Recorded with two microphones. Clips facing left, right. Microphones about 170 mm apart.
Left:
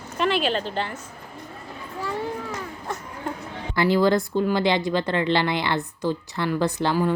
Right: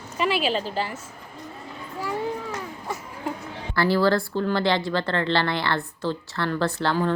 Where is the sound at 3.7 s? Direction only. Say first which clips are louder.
Left 1 dB; 20° left (ahead or behind).